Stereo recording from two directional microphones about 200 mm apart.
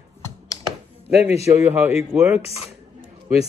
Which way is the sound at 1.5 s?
10° right (ahead or behind).